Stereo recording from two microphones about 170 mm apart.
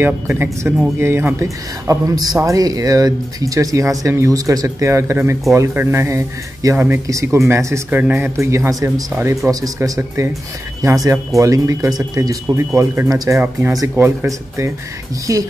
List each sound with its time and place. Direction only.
0.0 s speech: 15° right (ahead or behind)